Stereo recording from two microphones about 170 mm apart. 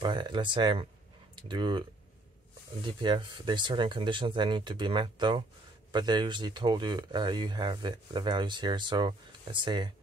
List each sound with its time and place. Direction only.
0.0 s speech: 25° right (ahead or behind)